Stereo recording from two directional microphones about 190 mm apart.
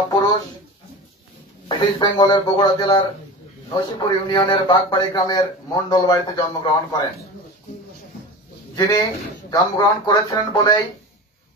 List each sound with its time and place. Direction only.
1.7 s a man's voice: 25° left (ahead or behind)
8.7 s a man's voice: 20° left (ahead or behind)